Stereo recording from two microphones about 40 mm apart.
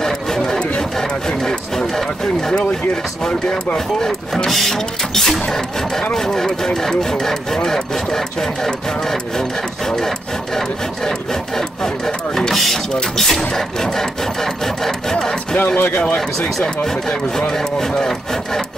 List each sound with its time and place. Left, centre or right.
0.0 s a sound: centre
0.7 s speech: centre
3.7 s speech: centre
15.5 s speech: left
16.2 s speech: centre